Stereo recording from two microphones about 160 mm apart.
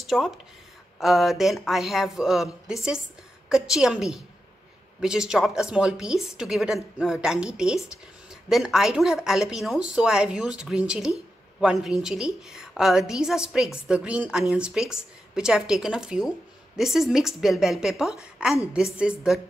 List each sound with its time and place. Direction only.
0.1 s a woman's voice: centre (ahead or behind)